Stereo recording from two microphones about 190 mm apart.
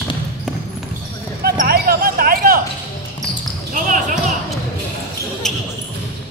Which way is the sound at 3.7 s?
40° right (ahead or behind).